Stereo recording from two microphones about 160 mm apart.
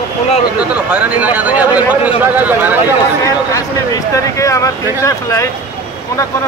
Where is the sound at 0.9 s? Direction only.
10° right (ahead or behind).